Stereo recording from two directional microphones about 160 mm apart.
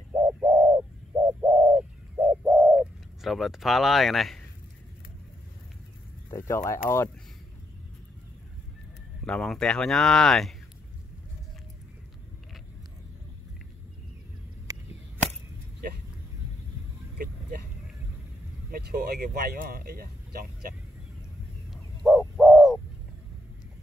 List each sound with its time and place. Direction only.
0.1 s bird: 15° right (ahead or behind)
2.7 s speech: 5° right (ahead or behind)
6.3 s speech: 15° left (ahead or behind)
9.2 s speech: 5° left (ahead or behind)
18.7 s speech: 90° right; by 20.4 s 70° right (ahead or behind)
22.0 s a sound: centre (ahead or behind)
22.4 s bird: 5° right (ahead or behind)